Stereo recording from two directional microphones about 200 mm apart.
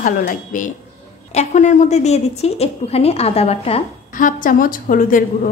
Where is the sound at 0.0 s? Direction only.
40° left (ahead or behind).